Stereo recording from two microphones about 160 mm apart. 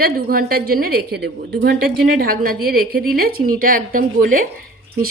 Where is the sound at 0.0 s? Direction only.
70° right (ahead or behind).